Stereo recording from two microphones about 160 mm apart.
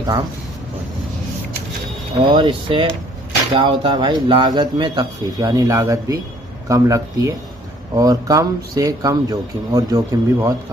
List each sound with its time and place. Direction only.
2.1 s speech: 30° right (ahead or behind)